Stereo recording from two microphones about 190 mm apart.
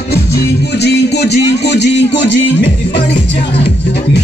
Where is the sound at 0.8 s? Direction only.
60° left (ahead or behind).